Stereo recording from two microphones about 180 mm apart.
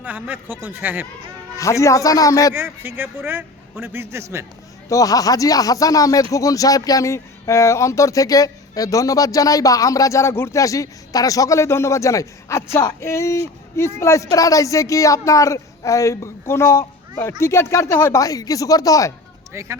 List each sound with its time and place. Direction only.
0.0 s a man's voice: 10° right (ahead or behind)
1.5 s speech: 15° left (ahead or behind)
2.6 s a man's voice: 10° right (ahead or behind)
4.9 s speech: 20° left (ahead or behind)
19.5 s a man's voice: 15° right (ahead or behind)